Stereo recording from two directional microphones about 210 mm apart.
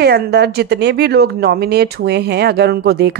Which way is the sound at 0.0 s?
50° right (ahead or behind).